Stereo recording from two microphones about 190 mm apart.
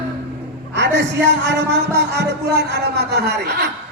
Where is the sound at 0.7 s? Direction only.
70° right (ahead or behind).